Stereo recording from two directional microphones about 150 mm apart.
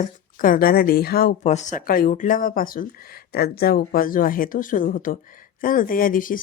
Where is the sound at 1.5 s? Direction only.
55° left (ahead or behind).